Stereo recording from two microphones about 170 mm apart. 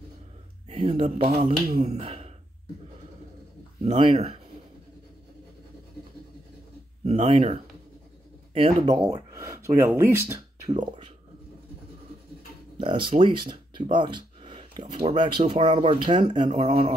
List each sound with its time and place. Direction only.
0.7 s speech: 35° right (ahead or behind)
3.8 s speech: 30° right (ahead or behind)
7.2 s speech: 35° right (ahead or behind)
8.5 s speech: 30° right (ahead or behind); by 10.8 s 15° right (ahead or behind)
12.8 s speech: 30° right (ahead or behind)